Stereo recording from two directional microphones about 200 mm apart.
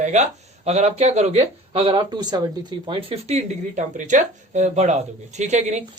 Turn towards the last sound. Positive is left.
turn(degrees=-35)  # may be behind; listen again after turning